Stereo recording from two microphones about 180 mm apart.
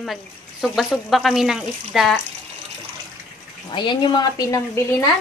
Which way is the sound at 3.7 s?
25° left (ahead or behind).